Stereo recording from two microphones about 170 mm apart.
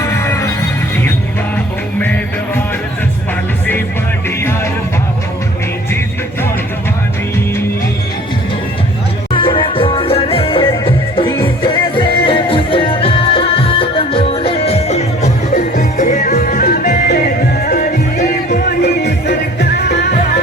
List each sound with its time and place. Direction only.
0.0 s music: 15° left (ahead or behind)
1.5 s music: 10° left (ahead or behind)
4.4 s music: 15° left (ahead or behind)
9.3 s music: 30° left (ahead or behind); by 17.1 s 50° left (ahead or behind)
17.1 s music: 60° left (ahead or behind)
18.8 s music: 70° left (ahead or behind)